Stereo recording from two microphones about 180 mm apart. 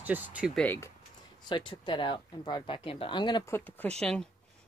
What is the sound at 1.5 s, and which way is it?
Speech, 25° left (ahead or behind).